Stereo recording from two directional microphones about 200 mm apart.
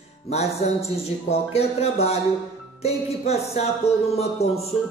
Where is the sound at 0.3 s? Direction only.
35° left (ahead or behind).